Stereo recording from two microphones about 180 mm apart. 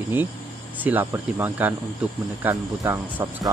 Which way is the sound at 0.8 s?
10° right (ahead or behind).